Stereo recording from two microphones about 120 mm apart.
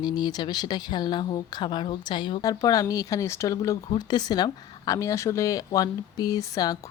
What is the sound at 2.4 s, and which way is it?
Speech, 30° left (ahead or behind).